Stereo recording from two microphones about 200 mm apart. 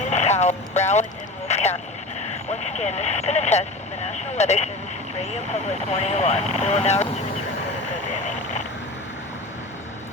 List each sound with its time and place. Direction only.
0.0 s vehicle: 35° left (ahead or behind)
2.5 s speech: 35° left (ahead or behind)
5.9 s speech: 35° left (ahead or behind)
7.9 s vehicle: 35° left (ahead or behind)